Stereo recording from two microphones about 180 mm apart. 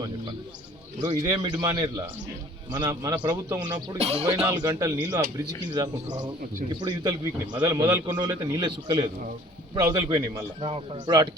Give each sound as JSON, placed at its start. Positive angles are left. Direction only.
{"t": 1.0, "sound": "a man's voice", "side_deg": -20}
{"t": 3.9, "sound": "speech", "side_deg": -35}
{"t": 4.3, "sound": "a man's voice", "side_deg": -15}
{"t": 10.6, "sound": "a man's voice", "side_deg": -30}